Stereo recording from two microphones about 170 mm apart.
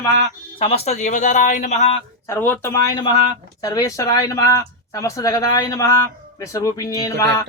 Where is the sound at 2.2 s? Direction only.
15° left (ahead or behind).